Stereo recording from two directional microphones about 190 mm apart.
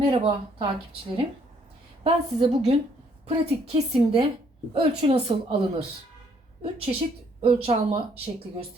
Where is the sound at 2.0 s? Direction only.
35° right (ahead or behind).